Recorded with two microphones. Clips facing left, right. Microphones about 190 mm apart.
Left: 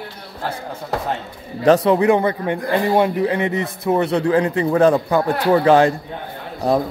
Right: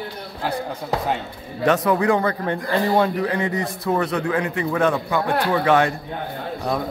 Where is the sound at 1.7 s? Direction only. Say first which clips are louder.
Left 5 dB; 25° left (ahead or behind).